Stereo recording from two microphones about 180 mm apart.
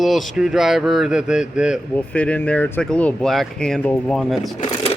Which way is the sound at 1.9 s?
10° left (ahead or behind).